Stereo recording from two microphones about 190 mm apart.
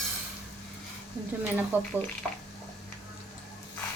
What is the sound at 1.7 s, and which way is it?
Speech, 10° right (ahead or behind).